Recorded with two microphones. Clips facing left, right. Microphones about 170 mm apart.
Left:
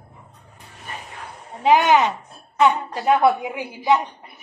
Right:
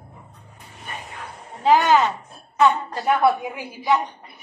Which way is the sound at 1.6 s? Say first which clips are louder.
Left 1 dB; 20° left (ahead or behind).